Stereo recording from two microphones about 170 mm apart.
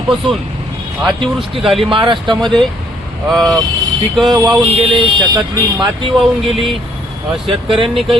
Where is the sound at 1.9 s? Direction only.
30° right (ahead or behind).